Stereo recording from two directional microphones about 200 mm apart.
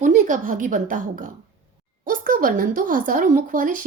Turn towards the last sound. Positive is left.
turn(degrees=-40)  # may be behind; listen again after turning